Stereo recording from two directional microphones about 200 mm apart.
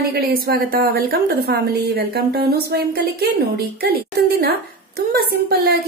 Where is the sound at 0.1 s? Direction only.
50° right (ahead or behind).